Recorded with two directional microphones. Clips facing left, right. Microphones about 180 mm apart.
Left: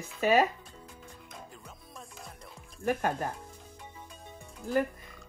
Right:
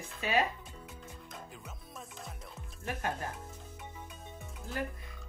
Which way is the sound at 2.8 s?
50° left (ahead or behind).